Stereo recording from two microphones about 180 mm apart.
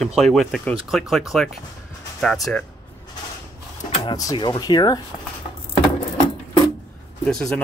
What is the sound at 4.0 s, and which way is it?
Speech, 20° left (ahead or behind).